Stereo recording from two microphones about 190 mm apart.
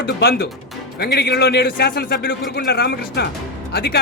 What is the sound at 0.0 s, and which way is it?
Speech, 55° left (ahead or behind).